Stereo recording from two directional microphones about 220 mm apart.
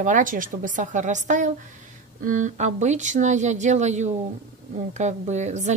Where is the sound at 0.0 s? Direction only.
35° right (ahead or behind).